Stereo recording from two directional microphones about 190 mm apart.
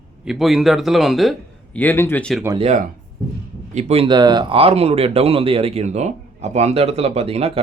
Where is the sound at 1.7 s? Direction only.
10° left (ahead or behind).